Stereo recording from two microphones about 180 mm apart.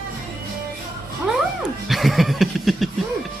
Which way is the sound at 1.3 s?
Centre (ahead or behind).